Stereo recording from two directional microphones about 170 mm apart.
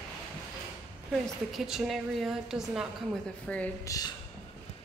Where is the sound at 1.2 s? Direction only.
Centre (ahead or behind).